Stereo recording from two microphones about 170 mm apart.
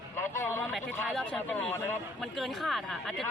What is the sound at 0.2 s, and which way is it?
Vehicle, 15° left (ahead or behind).